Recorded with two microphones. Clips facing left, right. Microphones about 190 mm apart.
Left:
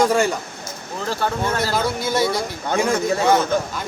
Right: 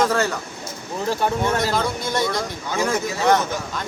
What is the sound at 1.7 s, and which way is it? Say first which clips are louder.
Speech: left 2 dB; 5° left (ahead or behind).